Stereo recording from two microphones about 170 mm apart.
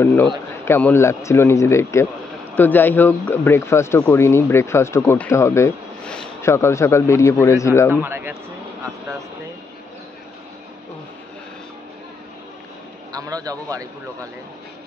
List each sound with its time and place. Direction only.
0.0 s speech: 15° left (ahead or behind)
7.9 s speech: 10° right (ahead or behind)
13.1 s a man's voice: 20° right (ahead or behind)